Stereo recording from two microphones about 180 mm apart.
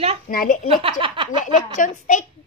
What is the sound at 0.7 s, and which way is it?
Speech, 30° right (ahead or behind).